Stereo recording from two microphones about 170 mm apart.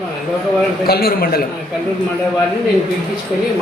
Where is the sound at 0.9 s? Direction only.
60° left (ahead or behind).